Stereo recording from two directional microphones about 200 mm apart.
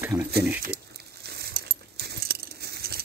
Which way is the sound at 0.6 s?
55° right (ahead or behind).